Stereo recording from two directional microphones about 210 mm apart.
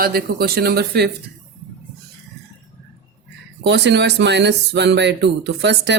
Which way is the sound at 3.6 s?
55° right (ahead or behind).